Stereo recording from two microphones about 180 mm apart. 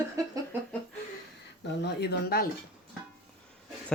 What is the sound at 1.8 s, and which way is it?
Speech, 65° left (ahead or behind).